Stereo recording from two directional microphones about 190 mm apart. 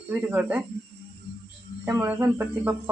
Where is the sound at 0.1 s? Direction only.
10° right (ahead or behind).